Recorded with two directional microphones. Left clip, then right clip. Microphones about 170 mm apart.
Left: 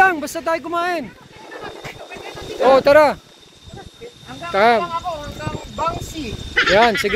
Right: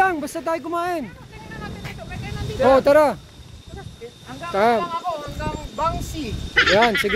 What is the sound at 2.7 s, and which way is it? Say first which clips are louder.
Speech: left 4 dB; 10° right (ahead or behind).